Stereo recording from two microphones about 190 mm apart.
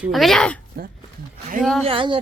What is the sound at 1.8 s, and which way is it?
Speech, 25° right (ahead or behind).